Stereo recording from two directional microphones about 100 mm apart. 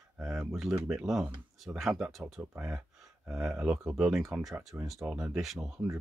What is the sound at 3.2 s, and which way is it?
Speech, 5° right (ahead or behind).